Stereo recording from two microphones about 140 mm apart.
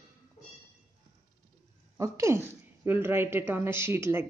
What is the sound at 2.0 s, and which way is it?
A woman's voice, 20° right (ahead or behind).